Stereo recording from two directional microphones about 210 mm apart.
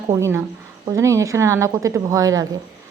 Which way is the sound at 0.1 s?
10° right (ahead or behind).